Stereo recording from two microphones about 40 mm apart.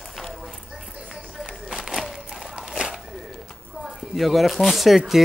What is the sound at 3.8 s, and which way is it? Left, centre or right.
Speech, centre.